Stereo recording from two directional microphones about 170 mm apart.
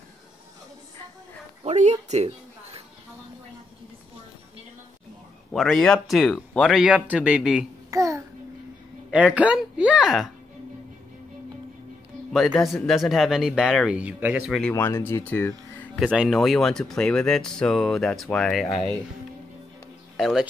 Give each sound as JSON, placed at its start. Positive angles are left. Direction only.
{"t": 1.6, "sound": "a woman's voice", "side_deg": -40}
{"t": 5.5, "sound": "speech", "side_deg": 0}
{"t": 7.9, "sound": "babbling", "side_deg": -20}
{"t": 9.1, "sound": "speech", "side_deg": -5}
{"t": 12.3, "sound": "speech", "side_deg": 0}
{"t": 14.7, "sound": "speech", "side_deg": 15}
{"t": 16.0, "sound": "speech", "side_deg": -5}
{"t": 20.2, "sound": "speech", "side_deg": 0}